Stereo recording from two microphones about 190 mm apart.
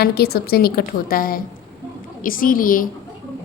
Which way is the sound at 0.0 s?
55° left (ahead or behind).